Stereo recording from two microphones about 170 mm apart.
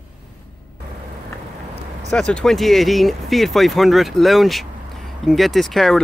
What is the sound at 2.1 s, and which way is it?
Speech, 5° left (ahead or behind).